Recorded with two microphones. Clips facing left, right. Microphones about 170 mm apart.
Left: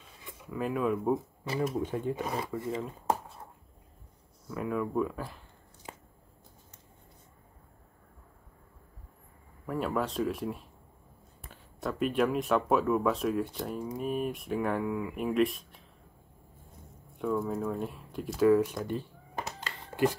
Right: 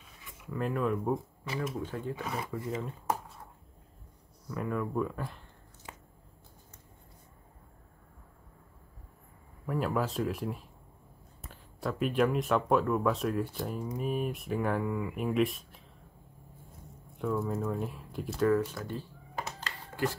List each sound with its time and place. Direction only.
0.5 s speech: 5° left (ahead or behind)
1.8 s speech: 15° left (ahead or behind)
2.5 s speech: centre (ahead or behind)
4.5 s speech: centre (ahead or behind)
5.9 s a sound: 35° left (ahead or behind)
9.7 s speech: centre (ahead or behind)
17.2 s speech: centre (ahead or behind)
18.6 s speech: 20° left (ahead or behind)